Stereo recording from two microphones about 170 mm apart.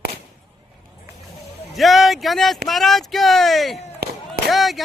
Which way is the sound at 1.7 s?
Centre (ahead or behind).